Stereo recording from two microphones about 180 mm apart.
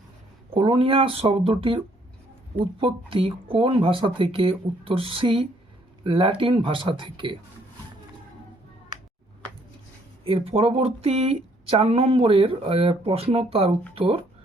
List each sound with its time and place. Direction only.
0.5 s speech: 30° right (ahead or behind)
2.8 s speech: 30° right (ahead or behind)
10.2 s speech: 30° right (ahead or behind)